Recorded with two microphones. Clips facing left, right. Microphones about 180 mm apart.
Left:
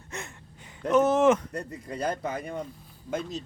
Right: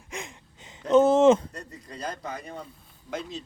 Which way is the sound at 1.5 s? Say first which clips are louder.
Left 7 dB; 55° left (ahead or behind).